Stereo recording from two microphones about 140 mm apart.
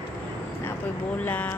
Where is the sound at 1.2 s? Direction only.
10° left (ahead or behind).